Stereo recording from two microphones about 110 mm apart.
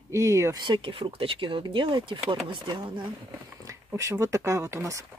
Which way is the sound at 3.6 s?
30° right (ahead or behind).